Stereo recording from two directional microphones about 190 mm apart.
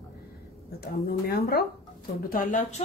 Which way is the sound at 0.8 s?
55° left (ahead or behind).